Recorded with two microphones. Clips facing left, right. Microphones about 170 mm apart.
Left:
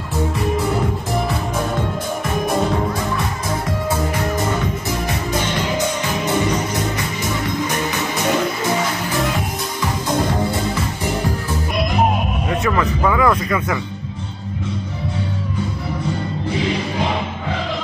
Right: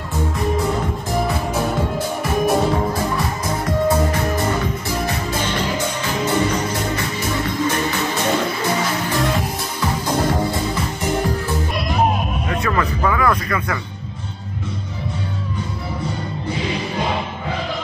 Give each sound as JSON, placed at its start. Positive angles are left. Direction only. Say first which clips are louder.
{"t": 5.0, "sound": "music", "louder": "left 1 dB", "side_deg": 15}
{"t": 12.6, "sound": "music", "louder": "left 2 dB", "side_deg": 15}